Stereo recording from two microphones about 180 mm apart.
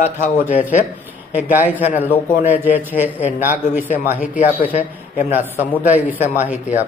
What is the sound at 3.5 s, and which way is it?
Speech, 45° left (ahead or behind).